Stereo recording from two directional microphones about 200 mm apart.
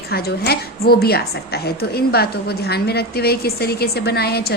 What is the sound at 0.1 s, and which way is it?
A woman's voice, 50° left (ahead or behind).